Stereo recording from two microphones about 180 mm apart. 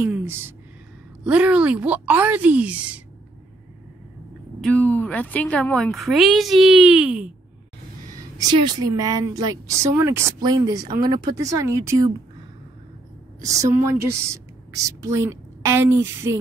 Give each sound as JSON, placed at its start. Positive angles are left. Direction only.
{"t": 0.0, "sound": "a sound", "side_deg": -10}
{"t": 1.2, "sound": "a woman's voice", "side_deg": -5}
{"t": 4.6, "sound": "a woman's voice", "side_deg": 10}
{"t": 8.2, "sound": "a sound", "side_deg": -20}
{"t": 8.5, "sound": "a woman's voice", "side_deg": -25}
{"t": 13.8, "sound": "speech", "side_deg": -15}